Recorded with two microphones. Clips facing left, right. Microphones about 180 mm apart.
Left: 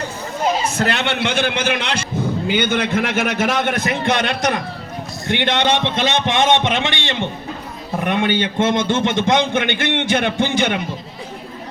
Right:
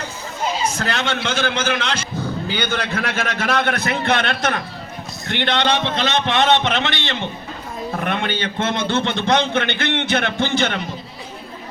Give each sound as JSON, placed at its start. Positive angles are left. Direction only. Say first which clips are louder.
{"t": 0.8, "sound": "a man's voice", "louder": "left 3 dB", "side_deg": 20}